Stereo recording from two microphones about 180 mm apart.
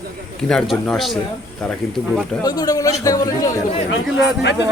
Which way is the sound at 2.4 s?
20° left (ahead or behind).